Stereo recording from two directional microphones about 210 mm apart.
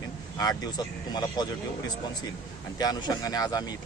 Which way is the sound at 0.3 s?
20° left (ahead or behind).